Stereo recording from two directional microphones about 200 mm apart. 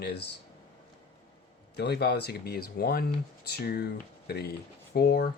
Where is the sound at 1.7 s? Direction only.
55° left (ahead or behind).